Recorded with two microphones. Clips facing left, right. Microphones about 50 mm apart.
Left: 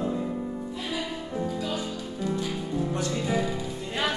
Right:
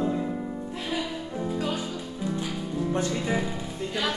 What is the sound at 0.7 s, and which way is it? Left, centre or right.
Music, right.